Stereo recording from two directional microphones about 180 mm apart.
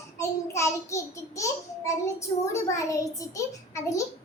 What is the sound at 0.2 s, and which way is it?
A child's voice, 15° left (ahead or behind).